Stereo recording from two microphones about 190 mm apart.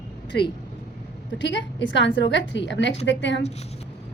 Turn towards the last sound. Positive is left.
turn(degrees=70)  # may be behind; listen again after turning